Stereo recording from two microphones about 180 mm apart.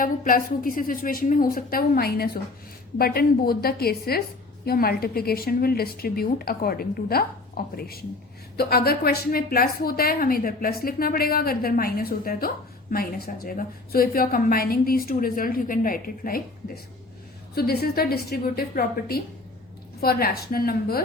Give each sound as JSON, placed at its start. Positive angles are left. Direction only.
{"t": 0.0, "sound": "a woman's voice", "side_deg": 50}